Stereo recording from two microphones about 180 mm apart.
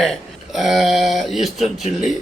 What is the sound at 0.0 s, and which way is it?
Speech, centre (ahead or behind).